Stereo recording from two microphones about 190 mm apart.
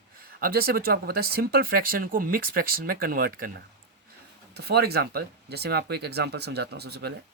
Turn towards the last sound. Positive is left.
turn(degrees=-60)  # may be behind; listen again after turning